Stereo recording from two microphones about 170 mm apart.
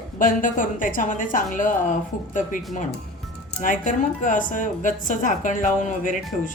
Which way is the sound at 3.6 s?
50° left (ahead or behind).